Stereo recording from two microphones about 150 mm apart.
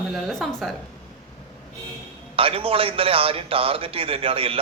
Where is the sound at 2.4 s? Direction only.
40° right (ahead or behind).